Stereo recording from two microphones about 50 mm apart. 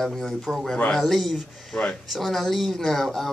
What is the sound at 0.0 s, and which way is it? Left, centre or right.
Speech, centre.